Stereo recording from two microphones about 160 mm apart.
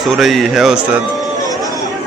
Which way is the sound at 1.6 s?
20° left (ahead or behind).